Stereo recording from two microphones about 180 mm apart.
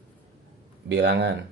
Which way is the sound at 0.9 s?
70° right (ahead or behind).